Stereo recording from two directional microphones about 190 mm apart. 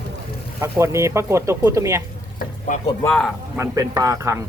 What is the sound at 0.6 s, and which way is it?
Speech, 15° right (ahead or behind).